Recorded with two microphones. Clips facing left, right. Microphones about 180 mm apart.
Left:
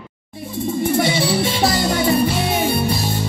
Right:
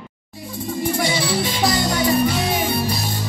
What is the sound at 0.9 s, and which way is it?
Music, 25° left (ahead or behind).